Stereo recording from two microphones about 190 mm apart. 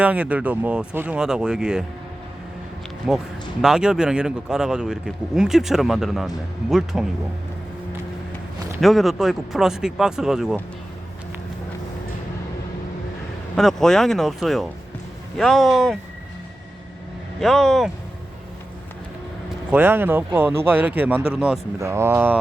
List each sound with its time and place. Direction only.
0.0 s speech: 5° right (ahead or behind)
3.1 s speech: 5° right (ahead or behind)
8.8 s speech: centre (ahead or behind)
13.6 s speech: centre (ahead or behind)
17.4 s speech: centre (ahead or behind)
19.7 s speech: 10° right (ahead or behind)
21.8 s speech: 15° right (ahead or behind)